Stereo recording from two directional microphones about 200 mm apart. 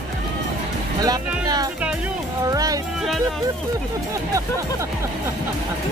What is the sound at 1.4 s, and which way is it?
Speech, 20° right (ahead or behind).